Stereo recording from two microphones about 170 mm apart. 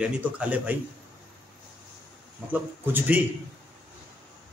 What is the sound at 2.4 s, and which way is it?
Speech, 10° right (ahead or behind).